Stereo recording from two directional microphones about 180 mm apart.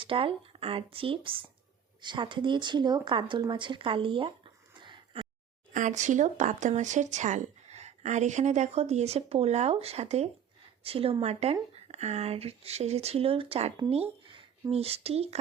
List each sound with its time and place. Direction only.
0.0 s speech: 30° right (ahead or behind)
5.7 s speech: 45° right (ahead or behind)